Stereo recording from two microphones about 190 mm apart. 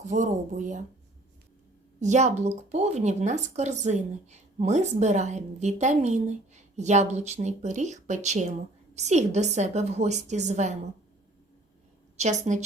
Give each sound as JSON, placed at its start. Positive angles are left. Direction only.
{"t": 0.0, "sound": "speech", "side_deg": -40}
{"t": 2.0, "sound": "speech", "side_deg": -40}
{"t": 12.1, "sound": "speech", "side_deg": -35}